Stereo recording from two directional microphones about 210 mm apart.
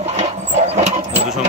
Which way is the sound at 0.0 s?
30° right (ahead or behind).